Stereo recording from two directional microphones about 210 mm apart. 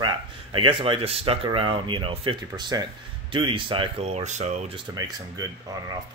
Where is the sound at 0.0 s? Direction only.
20° right (ahead or behind).